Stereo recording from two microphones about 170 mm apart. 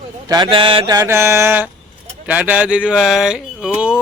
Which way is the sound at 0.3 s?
25° right (ahead or behind).